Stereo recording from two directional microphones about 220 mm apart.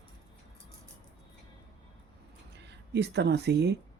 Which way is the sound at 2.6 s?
50° right (ahead or behind).